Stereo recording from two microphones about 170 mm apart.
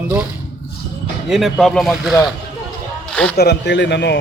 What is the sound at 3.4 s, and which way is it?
Speech, 80° left.